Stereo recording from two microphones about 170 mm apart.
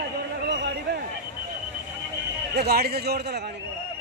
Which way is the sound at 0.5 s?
90° right.